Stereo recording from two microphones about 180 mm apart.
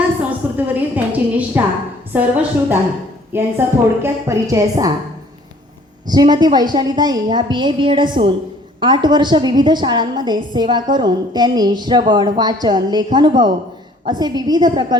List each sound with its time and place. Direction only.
0.3 s a sound: 10° right (ahead or behind)
2.1 s a woman's voice: 10° right (ahead or behind)
6.1 s a woman's voice: 25° right (ahead or behind)